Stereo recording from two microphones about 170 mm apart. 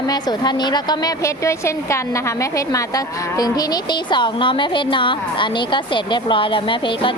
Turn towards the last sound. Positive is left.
turn(degrees=30)  # may be behind; listen again after turning